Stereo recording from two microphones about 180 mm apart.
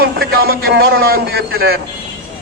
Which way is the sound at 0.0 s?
60° right (ahead or behind).